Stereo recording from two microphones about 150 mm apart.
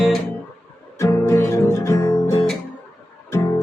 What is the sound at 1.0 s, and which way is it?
Music, 15° left (ahead or behind).